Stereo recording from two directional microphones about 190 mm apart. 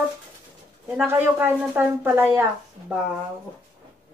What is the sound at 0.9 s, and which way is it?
A woman's voice, 10° right (ahead or behind).